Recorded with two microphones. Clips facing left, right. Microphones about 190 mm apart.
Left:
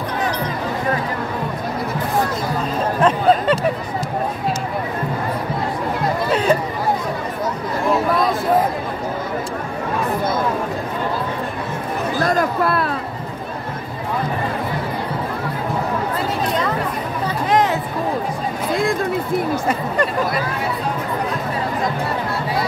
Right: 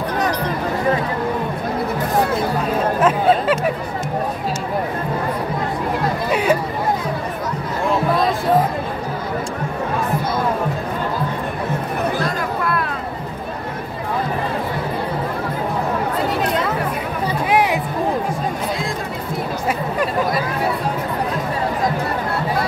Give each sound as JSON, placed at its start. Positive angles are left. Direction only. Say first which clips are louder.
{"t": 3.0, "sound": "speech", "louder": "left 2 dB", "side_deg": -5}
{"t": 12.3, "sound": "a sound", "louder": "left 4 dB", "side_deg": 40}
{"t": 17.5, "sound": "music", "louder": "left 1 dB", "side_deg": -10}